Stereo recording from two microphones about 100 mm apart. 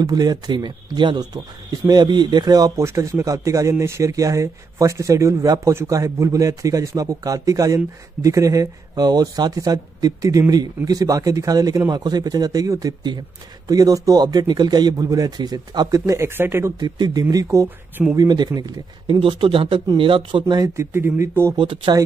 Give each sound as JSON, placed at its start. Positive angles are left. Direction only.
{"t": 0.0, "sound": "speech", "side_deg": -40}
{"t": 16.3, "sound": "speech", "side_deg": -25}
{"t": 16.8, "sound": "speech", "side_deg": -40}
{"t": 19.0, "sound": "a man's voice", "side_deg": -60}
{"t": 20.5, "sound": "speech", "side_deg": -35}
{"t": 21.5, "sound": "a man's voice", "side_deg": -55}